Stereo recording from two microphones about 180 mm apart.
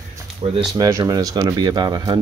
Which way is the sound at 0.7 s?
20° right (ahead or behind).